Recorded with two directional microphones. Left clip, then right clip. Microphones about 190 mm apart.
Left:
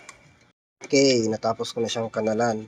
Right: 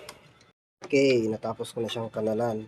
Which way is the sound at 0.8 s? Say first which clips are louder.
Left 3 dB; 5° left (ahead or behind).